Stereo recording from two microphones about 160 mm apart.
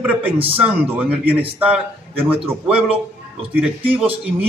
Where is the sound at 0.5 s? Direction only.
10° right (ahead or behind).